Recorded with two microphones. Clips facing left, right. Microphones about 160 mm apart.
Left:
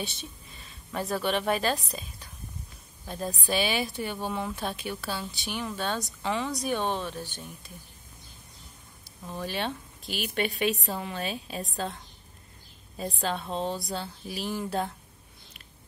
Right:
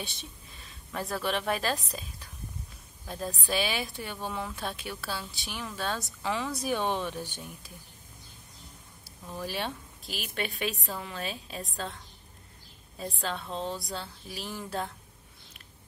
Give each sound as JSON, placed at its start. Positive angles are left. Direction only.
{"t": 0.0, "sound": "speech", "side_deg": 0}
{"t": 9.4, "sound": "speech", "side_deg": -5}
{"t": 13.2, "sound": "speech", "side_deg": 30}
{"t": 14.3, "sound": "speech", "side_deg": 5}